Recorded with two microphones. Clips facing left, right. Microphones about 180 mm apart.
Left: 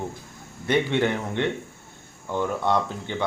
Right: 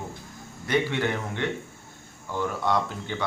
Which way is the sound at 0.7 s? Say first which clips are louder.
Left 3 dB; 20° left (ahead or behind).